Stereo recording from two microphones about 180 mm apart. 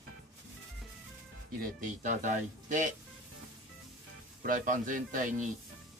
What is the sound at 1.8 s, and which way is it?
Speech, 45° right (ahead or behind).